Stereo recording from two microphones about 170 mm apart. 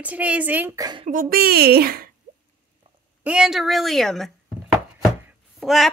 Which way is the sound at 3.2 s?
5° right (ahead or behind).